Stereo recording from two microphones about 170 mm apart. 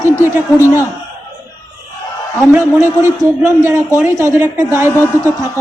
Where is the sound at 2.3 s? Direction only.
15° right (ahead or behind).